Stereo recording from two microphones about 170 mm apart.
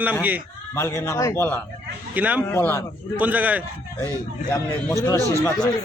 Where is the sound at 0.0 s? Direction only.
10° right (ahead or behind).